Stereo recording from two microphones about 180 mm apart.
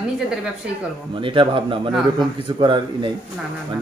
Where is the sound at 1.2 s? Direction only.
30° right (ahead or behind).